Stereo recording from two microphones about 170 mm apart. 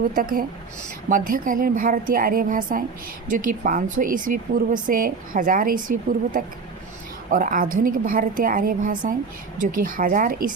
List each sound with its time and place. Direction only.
0.2 s a woman's voice: 55° right (ahead or behind)